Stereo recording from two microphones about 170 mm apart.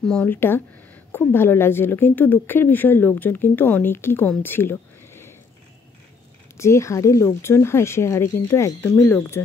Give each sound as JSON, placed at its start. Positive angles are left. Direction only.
{"t": 0.0, "sound": "speech", "side_deg": 5}
{"t": 6.5, "sound": "speech", "side_deg": 15}